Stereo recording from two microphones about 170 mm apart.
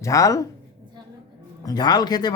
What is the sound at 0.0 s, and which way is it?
Speech, 20° left (ahead or behind).